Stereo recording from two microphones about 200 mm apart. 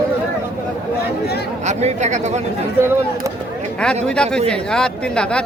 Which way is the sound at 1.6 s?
35° right (ahead or behind).